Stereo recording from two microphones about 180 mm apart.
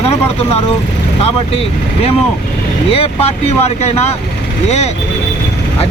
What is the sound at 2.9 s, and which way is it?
Speech, 35° left (ahead or behind).